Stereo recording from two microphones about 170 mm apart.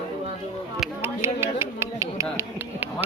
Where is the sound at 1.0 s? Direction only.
15° right (ahead or behind).